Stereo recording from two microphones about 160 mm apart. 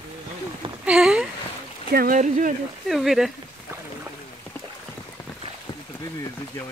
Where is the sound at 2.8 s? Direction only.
Centre (ahead or behind).